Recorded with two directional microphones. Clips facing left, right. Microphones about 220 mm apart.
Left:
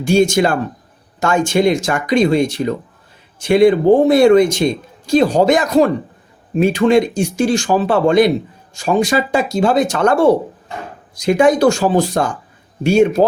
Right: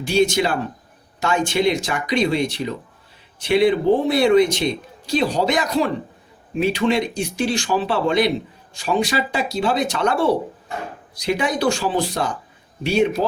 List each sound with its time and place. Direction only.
0.0 s speech: 45° left (ahead or behind)